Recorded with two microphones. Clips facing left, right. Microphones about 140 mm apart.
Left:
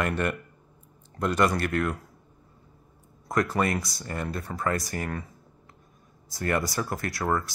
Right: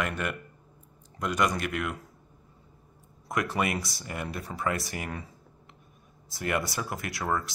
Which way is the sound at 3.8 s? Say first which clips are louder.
Left 1 dB; 25° right (ahead or behind).